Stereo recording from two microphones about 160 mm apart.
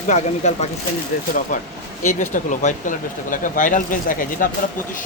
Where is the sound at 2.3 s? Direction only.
50° left (ahead or behind).